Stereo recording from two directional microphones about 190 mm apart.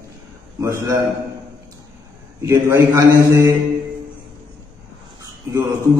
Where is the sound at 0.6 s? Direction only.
15° right (ahead or behind).